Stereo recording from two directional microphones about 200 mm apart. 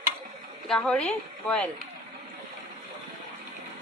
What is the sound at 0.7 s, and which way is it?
Speech, 5° left (ahead or behind).